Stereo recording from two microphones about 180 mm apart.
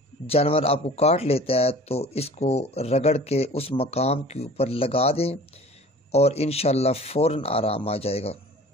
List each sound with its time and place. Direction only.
0.3 s speech: 35° left (ahead or behind)